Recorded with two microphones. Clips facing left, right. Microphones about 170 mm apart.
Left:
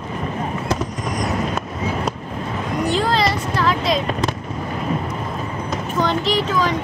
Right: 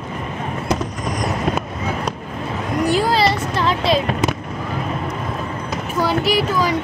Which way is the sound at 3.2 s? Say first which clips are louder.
Right 1 dB; 25° right (ahead or behind).